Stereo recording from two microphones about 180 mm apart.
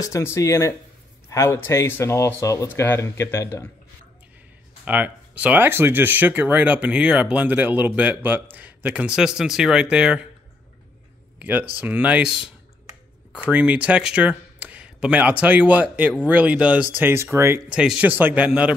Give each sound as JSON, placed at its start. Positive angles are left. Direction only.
{"t": 0.0, "sound": "speech", "side_deg": 15}
{"t": 4.8, "sound": "speech", "side_deg": -10}
{"t": 11.8, "sound": "speech", "side_deg": -10}